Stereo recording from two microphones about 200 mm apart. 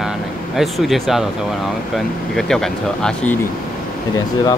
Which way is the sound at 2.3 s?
Centre (ahead or behind).